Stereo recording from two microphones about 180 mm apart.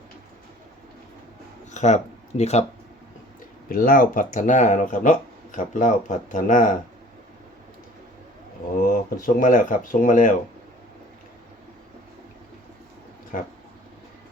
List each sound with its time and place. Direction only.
1.7 s speech: 40° left (ahead or behind)
3.7 s speech: 55° left (ahead or behind)
8.9 s speech: 50° left (ahead or behind)
13.3 s speech: 50° left (ahead or behind)